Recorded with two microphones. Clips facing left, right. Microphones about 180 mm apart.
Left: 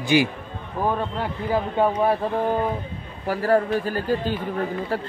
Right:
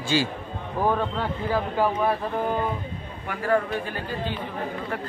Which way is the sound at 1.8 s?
25° left (ahead or behind).